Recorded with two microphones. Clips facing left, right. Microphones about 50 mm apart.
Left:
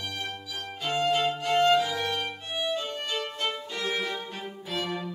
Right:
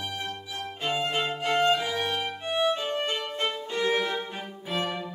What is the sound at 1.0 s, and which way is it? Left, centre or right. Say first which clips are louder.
Violin: left 6 dB; right.